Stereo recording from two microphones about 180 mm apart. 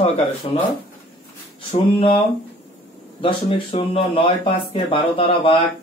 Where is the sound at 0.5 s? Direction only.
35° left (ahead or behind).